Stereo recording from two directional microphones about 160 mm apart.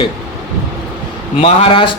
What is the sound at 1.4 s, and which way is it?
Speech, 35° left (ahead or behind).